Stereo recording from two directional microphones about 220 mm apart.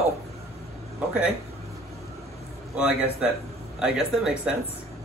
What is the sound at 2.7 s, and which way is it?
Speech, 5° right (ahead or behind).